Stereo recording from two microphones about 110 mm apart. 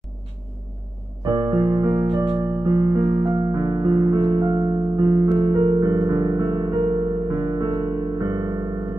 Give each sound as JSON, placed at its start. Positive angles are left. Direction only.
{"t": 1.2, "sound": "keyboard", "side_deg": -35}
{"t": 3.3, "sound": "music", "side_deg": -40}